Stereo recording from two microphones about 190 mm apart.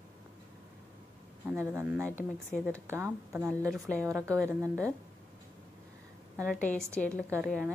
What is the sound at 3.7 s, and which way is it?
Speech, 5° left (ahead or behind).